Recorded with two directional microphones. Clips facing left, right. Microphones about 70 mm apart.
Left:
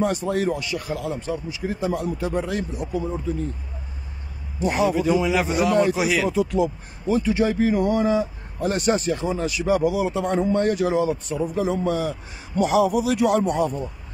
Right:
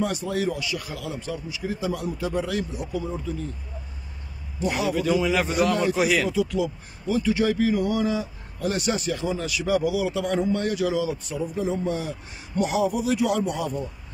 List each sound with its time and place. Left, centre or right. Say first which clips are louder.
0.0 s speech: left 3 dB; left
4.6 s a man's voice: left 4 dB; left
4.9 s a man's voice: left 2 dB; centre
5.9 s speech: even; centre
6.3 s speech: left 3 dB; left
11.4 s a man's voice: left 3 dB; left